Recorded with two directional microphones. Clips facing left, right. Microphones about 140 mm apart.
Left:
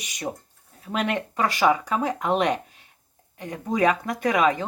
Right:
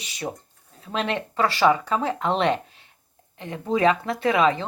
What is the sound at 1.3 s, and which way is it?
Speech, 15° left (ahead or behind).